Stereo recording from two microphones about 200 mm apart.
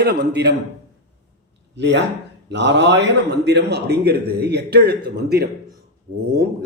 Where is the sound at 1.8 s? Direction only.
60° right (ahead or behind).